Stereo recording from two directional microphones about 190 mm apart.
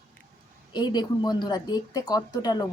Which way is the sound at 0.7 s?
20° left (ahead or behind).